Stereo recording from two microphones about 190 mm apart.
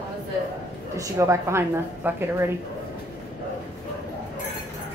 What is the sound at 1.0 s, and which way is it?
A woman's voice, 15° right (ahead or behind).